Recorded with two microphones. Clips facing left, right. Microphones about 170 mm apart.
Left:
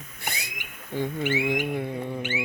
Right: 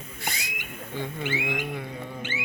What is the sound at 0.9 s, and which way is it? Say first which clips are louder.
Speech: left 5 dB; 45° left (ahead or behind).